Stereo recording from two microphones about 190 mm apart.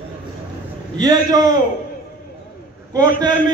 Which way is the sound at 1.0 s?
20° right (ahead or behind).